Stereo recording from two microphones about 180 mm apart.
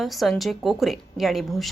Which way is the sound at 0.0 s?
Centre (ahead or behind).